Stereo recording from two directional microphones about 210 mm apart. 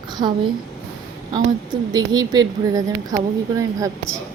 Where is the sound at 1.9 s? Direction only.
20° right (ahead or behind).